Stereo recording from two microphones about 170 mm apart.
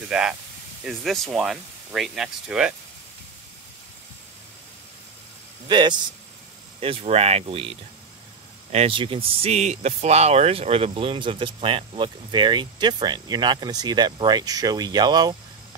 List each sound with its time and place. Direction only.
0.1 s speech: 5° right (ahead or behind)
5.7 s speech: 25° right (ahead or behind)